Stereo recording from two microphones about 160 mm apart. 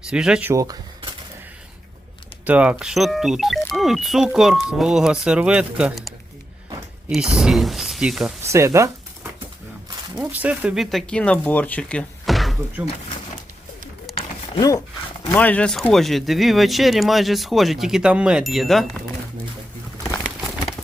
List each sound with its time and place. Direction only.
0.0 s speech: 5° right (ahead or behind)
0.5 s speech: 20° right (ahead or behind)
2.4 s speech: 10° right (ahead or behind)
8.4 s speech: 20° right (ahead or behind)
10.2 s speech: 10° right (ahead or behind)
14.1 s a sound: centre (ahead or behind)
15.3 s speech: 10° left (ahead or behind)